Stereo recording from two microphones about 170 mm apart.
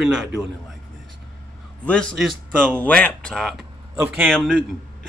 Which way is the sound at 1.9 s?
5° left (ahead or behind).